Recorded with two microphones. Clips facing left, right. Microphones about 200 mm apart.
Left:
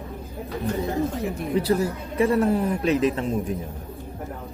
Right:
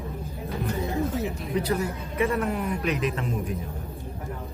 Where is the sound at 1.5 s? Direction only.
30° left (ahead or behind).